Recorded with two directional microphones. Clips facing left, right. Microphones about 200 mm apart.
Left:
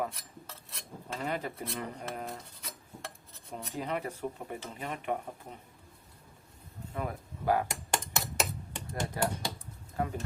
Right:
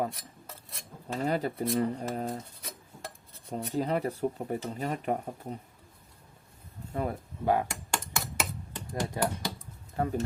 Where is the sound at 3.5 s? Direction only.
35° right (ahead or behind).